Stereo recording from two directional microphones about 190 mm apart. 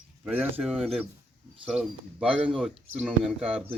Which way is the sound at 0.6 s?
Centre (ahead or behind).